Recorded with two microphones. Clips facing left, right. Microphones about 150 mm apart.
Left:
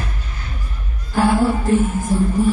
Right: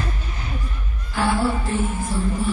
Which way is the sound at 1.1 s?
45° left (ahead or behind).